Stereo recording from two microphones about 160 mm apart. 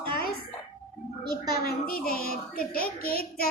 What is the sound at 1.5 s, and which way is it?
A child's voice, 70° left (ahead or behind).